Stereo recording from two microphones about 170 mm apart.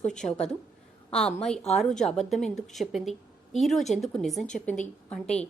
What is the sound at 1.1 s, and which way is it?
A woman's voice, 5° left (ahead or behind).